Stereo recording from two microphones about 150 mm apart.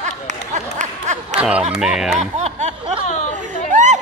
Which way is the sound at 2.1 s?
50° right (ahead or behind).